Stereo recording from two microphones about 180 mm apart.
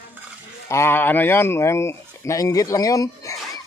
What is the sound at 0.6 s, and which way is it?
Speech, 15° left (ahead or behind).